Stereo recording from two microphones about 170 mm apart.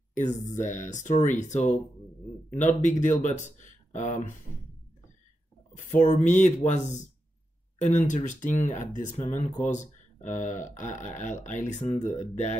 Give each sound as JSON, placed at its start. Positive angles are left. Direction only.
{"t": 0.1, "sound": "speech", "side_deg": 45}
{"t": 5.9, "sound": "speech", "side_deg": 45}
{"t": 7.8, "sound": "speech", "side_deg": 45}